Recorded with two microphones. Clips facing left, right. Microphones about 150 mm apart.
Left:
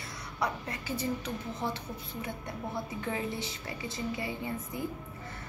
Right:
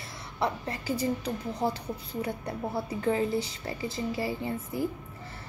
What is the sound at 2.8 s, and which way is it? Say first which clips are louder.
A woman's voice: right 8 dB; 35° right (ahead or behind).